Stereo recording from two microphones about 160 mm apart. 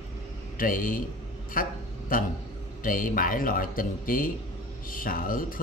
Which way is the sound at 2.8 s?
60° left (ahead or behind).